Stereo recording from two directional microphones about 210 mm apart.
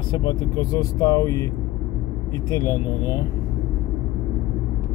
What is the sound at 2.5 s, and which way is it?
Speech, 15° left (ahead or behind).